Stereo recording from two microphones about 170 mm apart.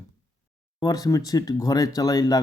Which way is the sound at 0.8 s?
20° left (ahead or behind).